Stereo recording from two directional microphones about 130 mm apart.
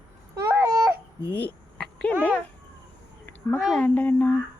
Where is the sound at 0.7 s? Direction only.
25° right (ahead or behind).